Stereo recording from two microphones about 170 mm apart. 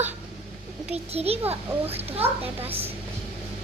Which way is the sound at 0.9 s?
35° right (ahead or behind).